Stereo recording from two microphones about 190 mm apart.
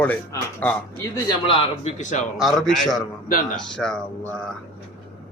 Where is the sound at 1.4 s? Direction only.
30° left (ahead or behind).